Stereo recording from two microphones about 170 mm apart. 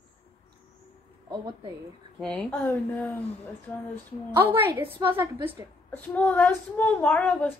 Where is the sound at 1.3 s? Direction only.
25° right (ahead or behind).